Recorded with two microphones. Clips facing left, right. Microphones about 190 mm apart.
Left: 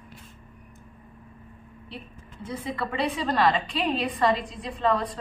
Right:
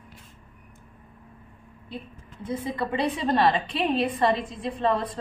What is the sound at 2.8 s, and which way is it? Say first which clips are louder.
A woman's voice: right 1 dB; 25° right (ahead or behind).